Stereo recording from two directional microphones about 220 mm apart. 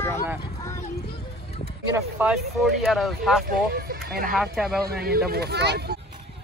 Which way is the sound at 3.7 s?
45° right (ahead or behind).